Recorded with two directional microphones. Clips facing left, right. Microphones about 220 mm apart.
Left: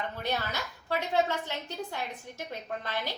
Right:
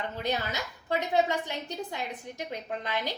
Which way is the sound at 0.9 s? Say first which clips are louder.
Right 2 dB; 15° right (ahead or behind).